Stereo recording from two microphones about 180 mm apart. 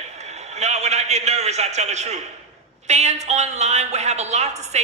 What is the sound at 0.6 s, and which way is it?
A woman's voice, 40° right (ahead or behind).